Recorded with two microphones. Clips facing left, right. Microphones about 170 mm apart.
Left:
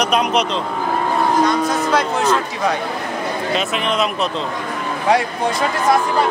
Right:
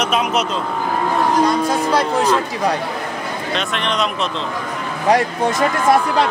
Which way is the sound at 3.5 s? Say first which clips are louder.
Left 1 dB; 5° left (ahead or behind).